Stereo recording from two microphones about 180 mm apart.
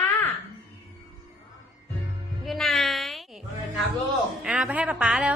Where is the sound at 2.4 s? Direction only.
Centre (ahead or behind).